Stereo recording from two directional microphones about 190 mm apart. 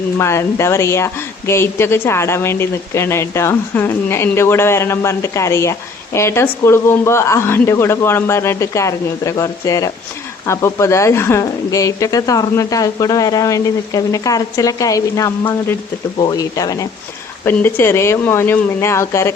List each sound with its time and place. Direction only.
0.2 s a woman's voice: 15° left (ahead or behind)